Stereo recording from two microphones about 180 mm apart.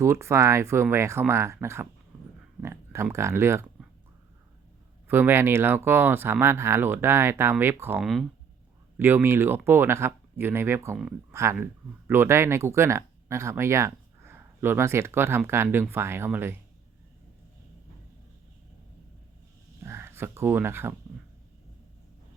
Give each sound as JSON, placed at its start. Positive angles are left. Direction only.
{"t": 0.0, "sound": "speech", "side_deg": -15}
{"t": 5.0, "sound": "speech", "side_deg": -10}
{"t": 19.8, "sound": "a sound", "side_deg": -15}